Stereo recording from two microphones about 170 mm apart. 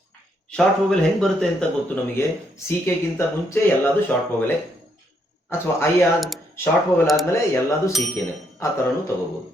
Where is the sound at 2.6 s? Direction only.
15° left (ahead or behind).